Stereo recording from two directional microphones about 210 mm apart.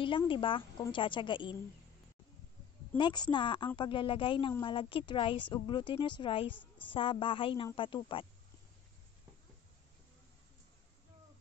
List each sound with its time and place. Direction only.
0.0 s speech: 25° left (ahead or behind)
3.0 s speech: 20° left (ahead or behind)